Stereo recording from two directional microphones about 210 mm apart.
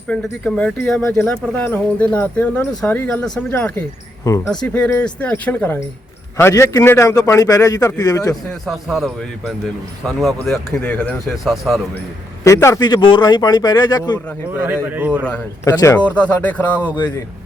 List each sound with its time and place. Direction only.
0.1 s speech: 5° left (ahead or behind)
8.6 s speech: centre (ahead or behind)
12.5 s speech: 15° left (ahead or behind)
14.5 s a man's voice: 10° right (ahead or behind)
15.3 s speech: 15° left (ahead or behind)